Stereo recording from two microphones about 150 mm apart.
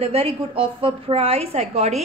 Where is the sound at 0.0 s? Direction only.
40° right (ahead or behind).